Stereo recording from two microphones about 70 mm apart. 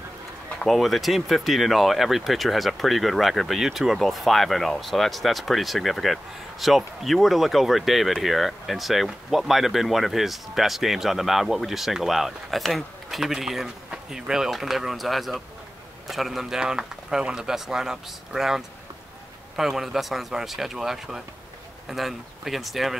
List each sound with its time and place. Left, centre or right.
0.7 s speech: centre